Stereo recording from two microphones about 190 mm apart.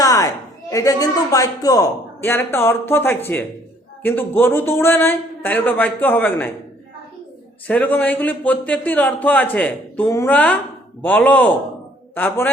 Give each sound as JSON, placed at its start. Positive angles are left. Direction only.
{"t": 0.0, "sound": "a sound", "side_deg": 20}
{"t": 0.7, "sound": "speech", "side_deg": 15}
{"t": 7.7, "sound": "speech", "side_deg": 10}